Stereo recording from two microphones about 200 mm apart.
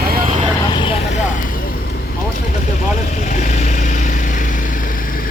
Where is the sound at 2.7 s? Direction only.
35° left (ahead or behind).